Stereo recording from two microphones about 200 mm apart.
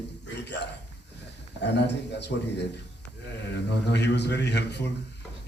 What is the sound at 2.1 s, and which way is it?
A man's voice, 60° left (ahead or behind).